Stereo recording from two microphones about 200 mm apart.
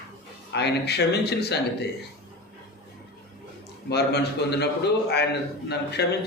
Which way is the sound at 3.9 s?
55° left (ahead or behind).